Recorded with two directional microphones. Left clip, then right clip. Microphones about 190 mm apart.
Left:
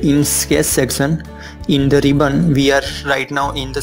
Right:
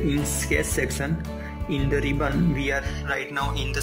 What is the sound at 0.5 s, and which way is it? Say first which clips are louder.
Speech: left 8 dB; 35° left (ahead or behind).